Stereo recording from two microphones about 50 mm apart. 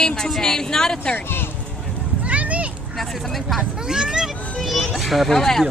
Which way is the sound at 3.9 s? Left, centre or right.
Centre.